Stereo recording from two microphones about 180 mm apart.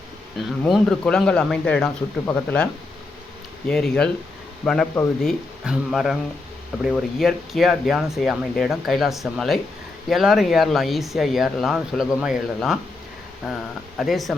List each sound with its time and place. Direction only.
0.3 s speech: centre (ahead or behind)
3.7 s speech: 5° left (ahead or behind)